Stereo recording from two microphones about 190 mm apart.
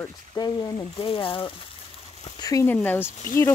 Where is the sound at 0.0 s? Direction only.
20° left (ahead or behind).